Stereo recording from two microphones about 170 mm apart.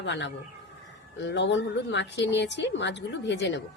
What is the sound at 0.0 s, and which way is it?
A woman's voice, 90° left.